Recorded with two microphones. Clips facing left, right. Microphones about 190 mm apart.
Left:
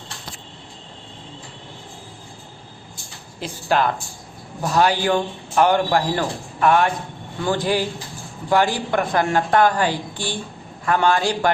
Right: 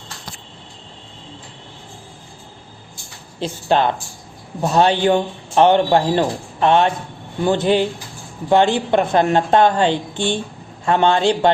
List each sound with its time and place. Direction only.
3.4 s a man's voice: 25° right (ahead or behind)